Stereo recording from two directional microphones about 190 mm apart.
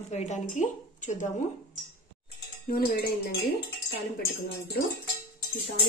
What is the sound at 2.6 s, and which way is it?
Speech, 50° left (ahead or behind).